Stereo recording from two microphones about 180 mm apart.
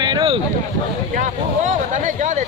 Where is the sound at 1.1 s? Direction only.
45° right (ahead or behind).